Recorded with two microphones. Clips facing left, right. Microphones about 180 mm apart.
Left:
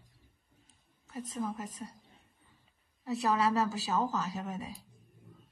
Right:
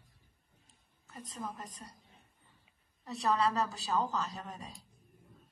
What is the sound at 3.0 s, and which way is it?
A woman's voice, 5° left (ahead or behind).